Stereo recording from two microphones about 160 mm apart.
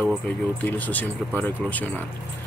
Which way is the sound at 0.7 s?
10° left (ahead or behind).